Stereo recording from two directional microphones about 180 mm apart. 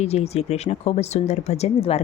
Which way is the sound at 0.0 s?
35° left (ahead or behind).